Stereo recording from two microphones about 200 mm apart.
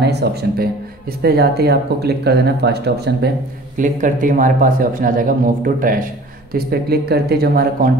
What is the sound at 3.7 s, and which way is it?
Speech, 40° right (ahead or behind).